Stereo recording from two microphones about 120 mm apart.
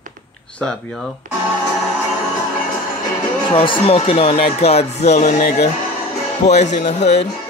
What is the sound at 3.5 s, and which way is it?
Speech, 50° left (ahead or behind).